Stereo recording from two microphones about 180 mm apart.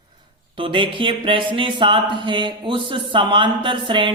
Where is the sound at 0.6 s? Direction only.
30° right (ahead or behind).